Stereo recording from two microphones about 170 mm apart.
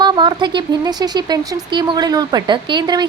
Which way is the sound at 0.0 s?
25° right (ahead or behind).